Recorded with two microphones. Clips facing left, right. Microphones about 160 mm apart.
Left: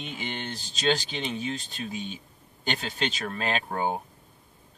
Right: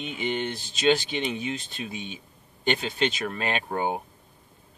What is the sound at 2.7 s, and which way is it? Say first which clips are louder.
Speech: right 5 dB; 5° right (ahead or behind).